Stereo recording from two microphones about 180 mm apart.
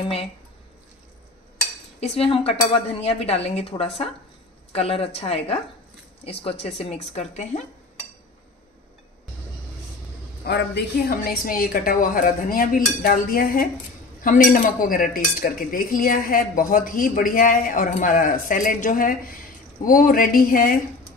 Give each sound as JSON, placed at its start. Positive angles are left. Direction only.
{"t": 2.0, "sound": "speech", "side_deg": 35}
{"t": 10.4, "sound": "dishes", "side_deg": 70}